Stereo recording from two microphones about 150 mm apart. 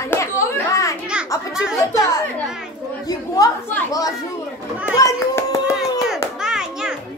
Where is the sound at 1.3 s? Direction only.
20° left (ahead or behind).